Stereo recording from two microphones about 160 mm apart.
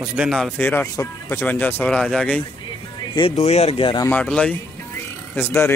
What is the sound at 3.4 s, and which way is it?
Speech, 45° left (ahead or behind).